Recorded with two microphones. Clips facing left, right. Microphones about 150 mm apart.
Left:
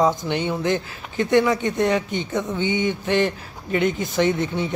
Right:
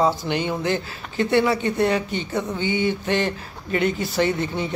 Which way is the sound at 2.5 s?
20° left (ahead or behind).